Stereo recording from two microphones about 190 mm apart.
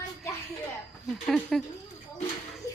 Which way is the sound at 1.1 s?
Centre (ahead or behind).